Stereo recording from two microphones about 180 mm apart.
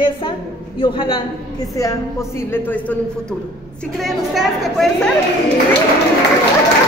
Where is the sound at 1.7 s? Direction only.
15° left (ahead or behind).